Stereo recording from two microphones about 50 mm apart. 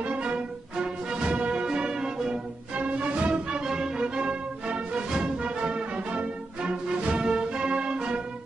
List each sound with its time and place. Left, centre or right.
0.0 s music: right
2.7 s music: right